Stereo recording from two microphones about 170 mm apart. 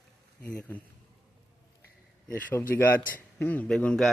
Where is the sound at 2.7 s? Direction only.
15° left (ahead or behind).